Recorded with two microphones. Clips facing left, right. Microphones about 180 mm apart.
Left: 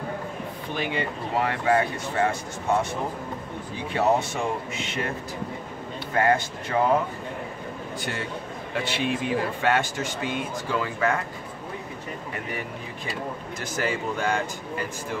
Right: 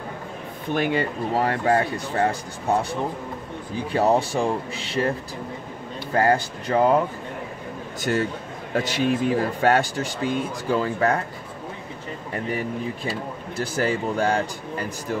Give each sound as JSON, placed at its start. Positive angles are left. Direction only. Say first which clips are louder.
{"t": 0.7, "sound": "speech", "louder": "right 6 dB", "side_deg": -45}
{"t": 3.9, "sound": "speech", "louder": "right 3 dB", "side_deg": -35}
{"t": 6.1, "sound": "speech", "louder": "right 2 dB", "side_deg": -35}
{"t": 8.0, "sound": "a man's voice", "louder": "right 10 dB", "side_deg": -40}
{"t": 13.6, "sound": "speech", "louder": "right 5 dB", "side_deg": -35}